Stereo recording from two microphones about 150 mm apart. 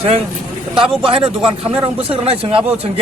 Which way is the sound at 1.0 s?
35° right (ahead or behind).